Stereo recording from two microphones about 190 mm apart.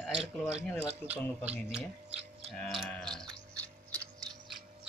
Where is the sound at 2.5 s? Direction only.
Centre (ahead or behind).